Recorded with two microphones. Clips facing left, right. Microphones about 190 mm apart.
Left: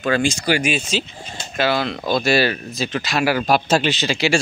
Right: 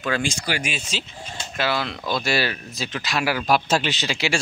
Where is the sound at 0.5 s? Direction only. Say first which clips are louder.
Left 8 dB; 65° left (ahead or behind).